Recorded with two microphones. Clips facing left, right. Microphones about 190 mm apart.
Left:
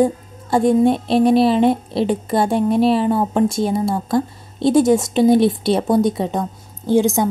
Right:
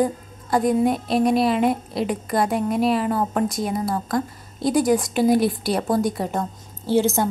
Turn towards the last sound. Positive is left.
turn(degrees=15)  # may be behind; listen again after turning